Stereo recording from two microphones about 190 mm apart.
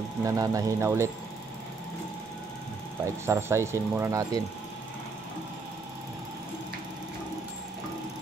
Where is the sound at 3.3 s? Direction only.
15° right (ahead or behind).